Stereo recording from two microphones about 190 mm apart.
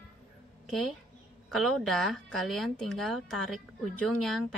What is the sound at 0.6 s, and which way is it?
A woman's voice, centre (ahead or behind).